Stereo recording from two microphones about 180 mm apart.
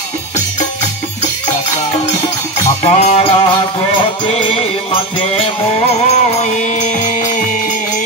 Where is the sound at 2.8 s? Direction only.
35° left (ahead or behind).